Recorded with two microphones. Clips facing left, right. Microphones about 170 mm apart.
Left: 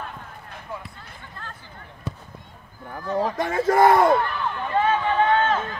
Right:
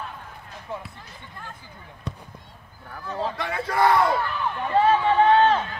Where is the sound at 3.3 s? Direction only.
45° left (ahead or behind).